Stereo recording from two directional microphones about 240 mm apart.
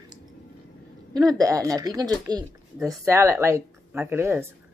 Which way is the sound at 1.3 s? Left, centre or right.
Centre.